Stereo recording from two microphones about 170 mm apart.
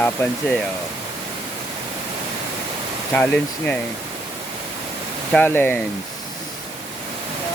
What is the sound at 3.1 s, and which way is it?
Speech, 10° left (ahead or behind).